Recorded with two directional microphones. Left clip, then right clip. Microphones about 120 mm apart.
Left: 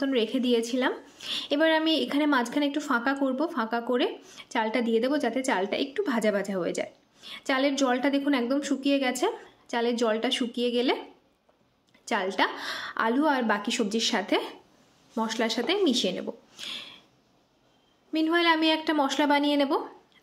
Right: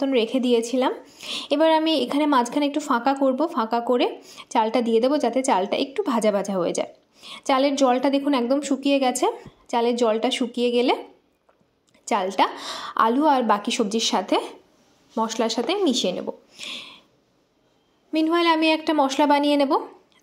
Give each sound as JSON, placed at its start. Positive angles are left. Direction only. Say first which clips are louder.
{"t": 0.0, "sound": "a woman's voice", "louder": "right 5 dB", "side_deg": -25}
{"t": 12.0, "sound": "a woman's voice", "louder": "right 5 dB", "side_deg": -25}
{"t": 18.1, "sound": "a woman's voice", "louder": "right 4 dB", "side_deg": -25}